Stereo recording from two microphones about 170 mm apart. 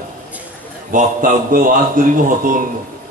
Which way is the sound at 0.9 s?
50° right (ahead or behind).